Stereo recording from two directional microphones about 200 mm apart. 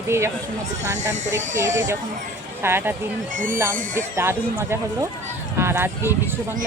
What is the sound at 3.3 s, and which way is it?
Speech, 40° right (ahead or behind).